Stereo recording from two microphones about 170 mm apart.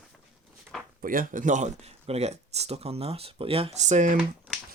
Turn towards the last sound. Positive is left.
turn(degrees=0)  # may be behind; listen again after turning